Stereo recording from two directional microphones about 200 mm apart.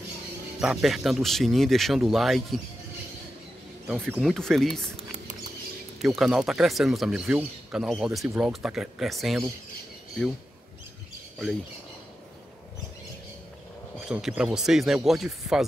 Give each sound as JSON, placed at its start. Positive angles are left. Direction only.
{"t": 0.6, "sound": "speech", "side_deg": 0}
{"t": 4.1, "sound": "speech", "side_deg": 0}
{"t": 4.9, "sound": "patter", "side_deg": -35}
{"t": 6.0, "sound": "speech", "side_deg": 0}
{"t": 14.0, "sound": "speech", "side_deg": -5}